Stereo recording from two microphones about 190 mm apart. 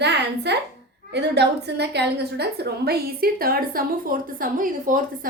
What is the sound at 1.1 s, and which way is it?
A woman's voice, 60° right (ahead or behind).